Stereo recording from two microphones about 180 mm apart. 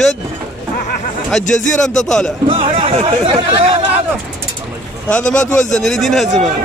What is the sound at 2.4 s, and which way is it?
Speech, 30° right (ahead or behind).